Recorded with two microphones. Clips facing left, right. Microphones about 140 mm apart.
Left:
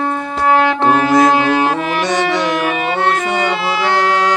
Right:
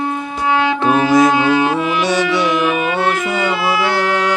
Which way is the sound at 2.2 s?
50° left (ahead or behind).